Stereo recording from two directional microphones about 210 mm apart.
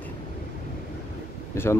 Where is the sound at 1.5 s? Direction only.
10° left (ahead or behind).